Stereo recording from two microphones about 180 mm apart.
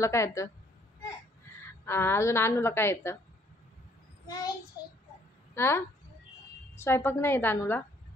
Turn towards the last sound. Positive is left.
turn(degrees=10)  # may be behind; listen again after turning